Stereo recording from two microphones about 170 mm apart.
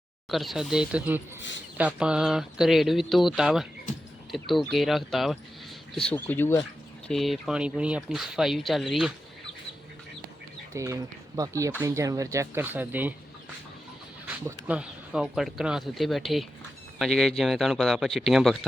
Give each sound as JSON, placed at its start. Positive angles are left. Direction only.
{"t": 0.3, "sound": "speech", "side_deg": 0}
{"t": 7.1, "sound": "speech", "side_deg": 0}
{"t": 10.8, "sound": "speech", "side_deg": -20}
{"t": 14.4, "sound": "speech", "side_deg": -5}